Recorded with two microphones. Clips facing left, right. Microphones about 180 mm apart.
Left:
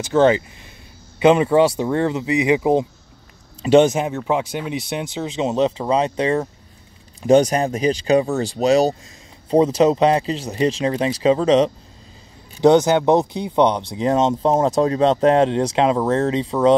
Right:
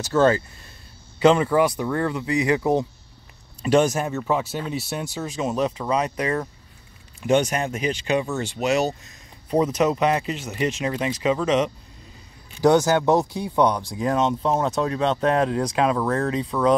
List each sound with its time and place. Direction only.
0.1 s speech: 20° left (ahead or behind)
7.2 s speech: 35° left (ahead or behind)
12.5 s speech: 20° left (ahead or behind)